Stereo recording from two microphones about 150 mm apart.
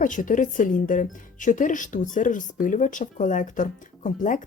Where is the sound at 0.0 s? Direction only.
60° left (ahead or behind).